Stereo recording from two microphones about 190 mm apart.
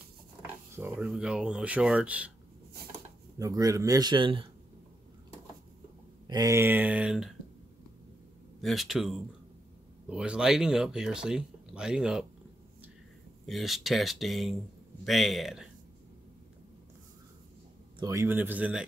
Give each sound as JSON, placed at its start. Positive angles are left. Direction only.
{"t": 0.7, "sound": "speech", "side_deg": -10}
{"t": 3.3, "sound": "a man's voice", "side_deg": -20}
{"t": 6.2, "sound": "speech", "side_deg": -20}
{"t": 8.5, "sound": "speech", "side_deg": 0}
{"t": 13.5, "sound": "speech", "side_deg": 0}
{"t": 17.9, "sound": "speech", "side_deg": -15}